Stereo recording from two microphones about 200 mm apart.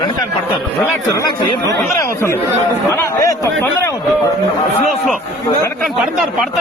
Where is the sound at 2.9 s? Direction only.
15° left (ahead or behind).